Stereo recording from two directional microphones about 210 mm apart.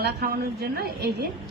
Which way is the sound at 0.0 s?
50° right (ahead or behind).